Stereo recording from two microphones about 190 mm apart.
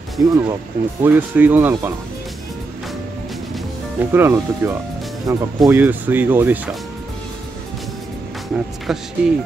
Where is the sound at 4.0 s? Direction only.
10° right (ahead or behind).